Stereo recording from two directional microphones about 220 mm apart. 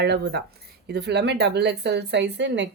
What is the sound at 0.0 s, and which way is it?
Speech, 50° right (ahead or behind).